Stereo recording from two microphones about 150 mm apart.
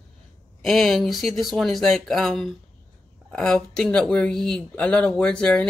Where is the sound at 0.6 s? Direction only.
Centre (ahead or behind).